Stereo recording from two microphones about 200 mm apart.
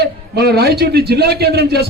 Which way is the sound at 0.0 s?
55° right (ahead or behind).